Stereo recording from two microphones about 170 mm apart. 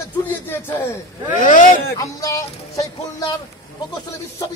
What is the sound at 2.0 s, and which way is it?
Speech, 20° left (ahead or behind).